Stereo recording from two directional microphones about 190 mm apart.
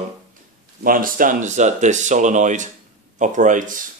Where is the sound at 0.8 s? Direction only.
45° right (ahead or behind).